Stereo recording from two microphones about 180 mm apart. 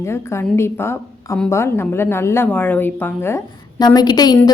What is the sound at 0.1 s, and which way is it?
A woman's voice, 15° left (ahead or behind).